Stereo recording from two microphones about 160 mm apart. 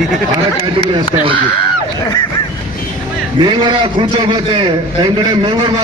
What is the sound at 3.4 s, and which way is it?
A man's voice, 30° right (ahead or behind).